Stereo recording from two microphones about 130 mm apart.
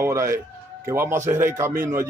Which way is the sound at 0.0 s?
20° right (ahead or behind).